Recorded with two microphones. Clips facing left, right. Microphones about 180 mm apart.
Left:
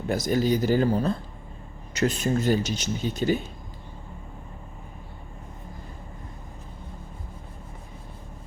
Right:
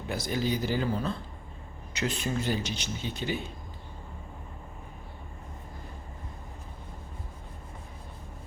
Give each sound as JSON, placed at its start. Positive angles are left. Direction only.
{"t": 0.1, "sound": "speech", "side_deg": 45}